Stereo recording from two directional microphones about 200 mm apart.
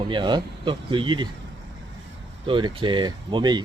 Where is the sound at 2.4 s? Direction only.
25° right (ahead or behind).